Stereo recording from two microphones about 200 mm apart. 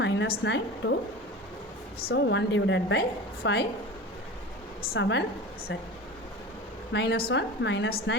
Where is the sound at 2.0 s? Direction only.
55° left (ahead or behind).